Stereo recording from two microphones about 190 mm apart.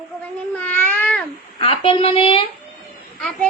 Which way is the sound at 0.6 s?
10° left (ahead or behind).